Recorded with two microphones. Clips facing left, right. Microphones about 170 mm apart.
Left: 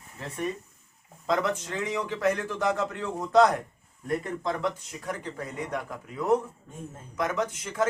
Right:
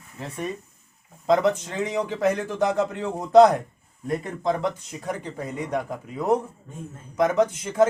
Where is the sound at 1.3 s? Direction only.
20° right (ahead or behind).